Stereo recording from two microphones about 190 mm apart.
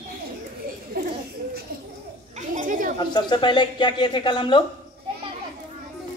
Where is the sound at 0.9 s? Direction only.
50° right (ahead or behind).